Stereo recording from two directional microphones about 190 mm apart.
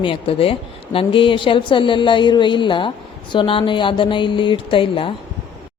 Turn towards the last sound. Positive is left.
turn(degrees=25)  # may be behind; listen again after turning